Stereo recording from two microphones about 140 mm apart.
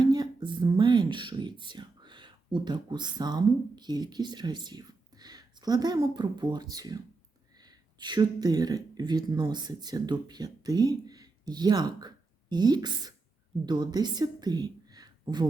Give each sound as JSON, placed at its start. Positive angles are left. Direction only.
{"t": 0.0, "sound": "a woman's voice", "side_deg": -30}